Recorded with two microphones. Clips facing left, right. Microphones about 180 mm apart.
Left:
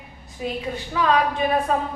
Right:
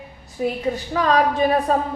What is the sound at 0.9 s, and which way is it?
Speech, 40° right (ahead or behind).